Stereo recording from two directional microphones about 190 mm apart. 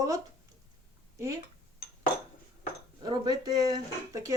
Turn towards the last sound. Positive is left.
turn(degrees=-20)  # may be behind; listen again after turning